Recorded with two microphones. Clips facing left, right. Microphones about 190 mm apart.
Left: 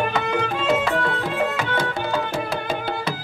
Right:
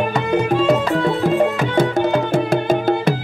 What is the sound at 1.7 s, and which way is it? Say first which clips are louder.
Music: right 8 dB; 50° right (ahead or behind).